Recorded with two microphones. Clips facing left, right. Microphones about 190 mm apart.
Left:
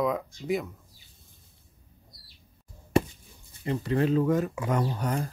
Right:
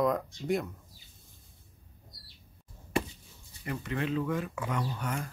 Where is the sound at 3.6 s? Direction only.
30° left (ahead or behind).